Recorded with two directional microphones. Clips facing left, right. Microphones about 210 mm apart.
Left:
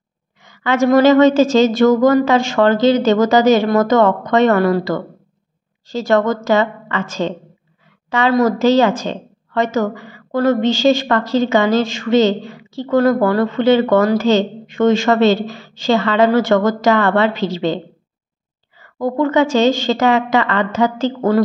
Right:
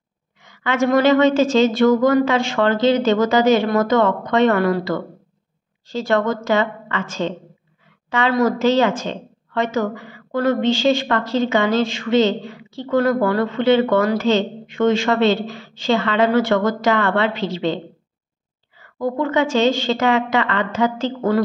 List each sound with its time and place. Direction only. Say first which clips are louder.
0.4 s a woman's voice: left 4 dB; 40° left (ahead or behind)
18.9 s a woman's voice: left 4 dB; 40° left (ahead or behind)